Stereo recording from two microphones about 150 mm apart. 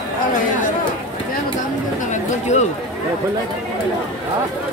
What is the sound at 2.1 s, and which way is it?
Chatter, 50° left (ahead or behind).